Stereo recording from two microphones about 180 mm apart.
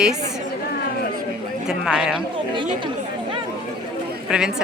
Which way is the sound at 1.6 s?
5° right (ahead or behind).